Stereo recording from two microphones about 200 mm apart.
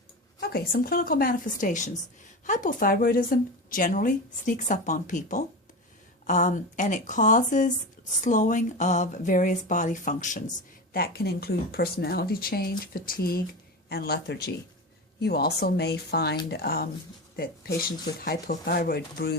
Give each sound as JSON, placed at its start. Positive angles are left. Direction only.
{"t": 0.3, "sound": "a woman's voice", "side_deg": 50}
{"t": 10.9, "sound": "speech", "side_deg": 50}